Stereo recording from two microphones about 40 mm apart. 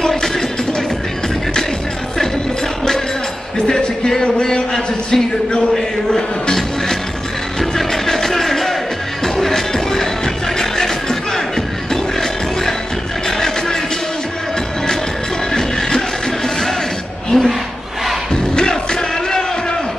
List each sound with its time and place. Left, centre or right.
0.0 s music: centre
3.6 s speech: centre
7.5 s music: centre
17.3 s a sound: centre
18.3 s music: centre